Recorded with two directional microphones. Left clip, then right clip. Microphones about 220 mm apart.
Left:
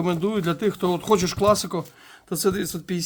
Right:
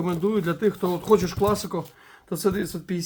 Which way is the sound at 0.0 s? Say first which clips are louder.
Left 1 dB; 50° left (ahead or behind).